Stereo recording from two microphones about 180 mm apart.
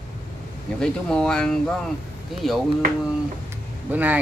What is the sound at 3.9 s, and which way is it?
Speech, 10° right (ahead or behind).